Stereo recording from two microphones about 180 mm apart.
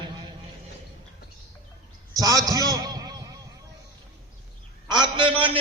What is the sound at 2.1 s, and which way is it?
Speech, 20° right (ahead or behind).